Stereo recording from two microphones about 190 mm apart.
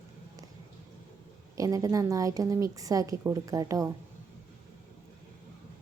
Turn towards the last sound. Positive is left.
turn(degrees=-15)  # may be behind; listen again after turning